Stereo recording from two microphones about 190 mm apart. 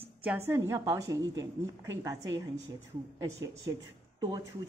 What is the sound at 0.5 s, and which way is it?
A woman's voice, 15° right (ahead or behind).